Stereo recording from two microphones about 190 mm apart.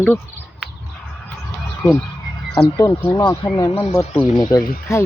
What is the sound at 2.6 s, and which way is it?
Speech, 10° left (ahead or behind).